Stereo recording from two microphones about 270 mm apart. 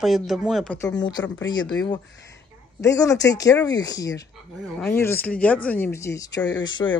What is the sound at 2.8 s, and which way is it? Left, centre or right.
Speech, centre.